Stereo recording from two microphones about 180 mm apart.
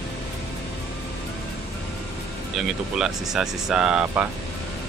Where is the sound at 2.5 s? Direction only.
5° right (ahead or behind).